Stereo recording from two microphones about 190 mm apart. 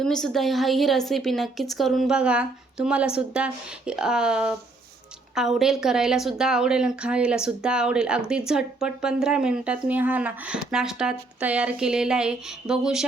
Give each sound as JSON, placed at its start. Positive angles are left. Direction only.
{"t": 0.0, "sound": "speech", "side_deg": 5}